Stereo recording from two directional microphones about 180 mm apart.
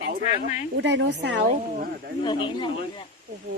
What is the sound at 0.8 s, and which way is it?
Speech, 80° right.